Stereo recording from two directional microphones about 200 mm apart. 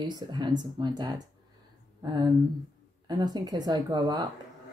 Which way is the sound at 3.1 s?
20° right (ahead or behind).